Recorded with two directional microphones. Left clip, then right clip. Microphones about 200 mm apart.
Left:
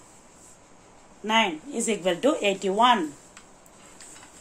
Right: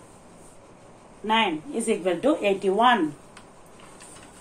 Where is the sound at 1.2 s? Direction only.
45° left (ahead or behind); by 3.0 s 60° left (ahead or behind).